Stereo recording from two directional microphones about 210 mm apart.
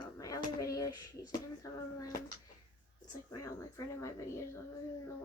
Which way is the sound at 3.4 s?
15° left (ahead or behind).